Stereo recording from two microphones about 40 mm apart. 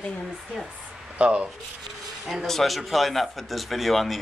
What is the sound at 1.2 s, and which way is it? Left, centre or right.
Speech, right.